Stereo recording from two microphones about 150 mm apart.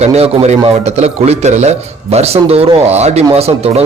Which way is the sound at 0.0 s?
45° right (ahead or behind).